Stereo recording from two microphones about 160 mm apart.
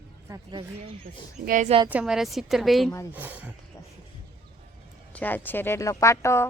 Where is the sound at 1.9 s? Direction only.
5° right (ahead or behind).